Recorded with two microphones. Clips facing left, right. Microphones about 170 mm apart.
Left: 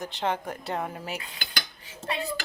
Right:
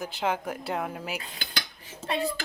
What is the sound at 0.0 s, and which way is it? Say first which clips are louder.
Speech: even; 5° right (ahead or behind).